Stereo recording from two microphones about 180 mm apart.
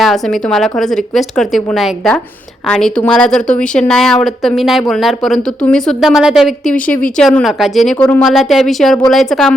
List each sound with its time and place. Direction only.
0.0 s a woman's voice: centre (ahead or behind)